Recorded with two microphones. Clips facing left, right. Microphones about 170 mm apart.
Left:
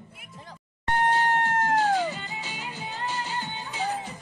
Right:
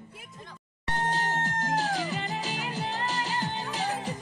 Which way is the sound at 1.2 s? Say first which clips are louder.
Left 6 dB; 40° right (ahead or behind).